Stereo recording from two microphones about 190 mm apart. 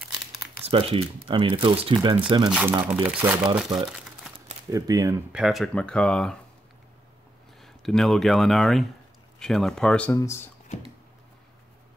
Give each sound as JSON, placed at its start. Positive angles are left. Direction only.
{"t": 0.0, "sound": "crumpling", "side_deg": 0}
{"t": 0.7, "sound": "speech", "side_deg": -30}
{"t": 2.5, "sound": "speech", "side_deg": -5}
{"t": 4.6, "sound": "speech", "side_deg": -20}
{"t": 5.3, "sound": "speech", "side_deg": 0}
{"t": 7.6, "sound": "speech", "side_deg": 0}
{"t": 10.1, "sound": "speech", "side_deg": 15}